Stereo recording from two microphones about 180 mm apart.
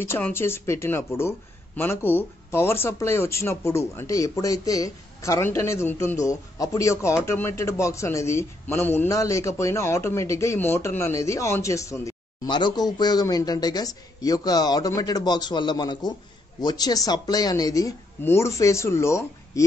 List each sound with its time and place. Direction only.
0.0 s speech: 15° left (ahead or behind)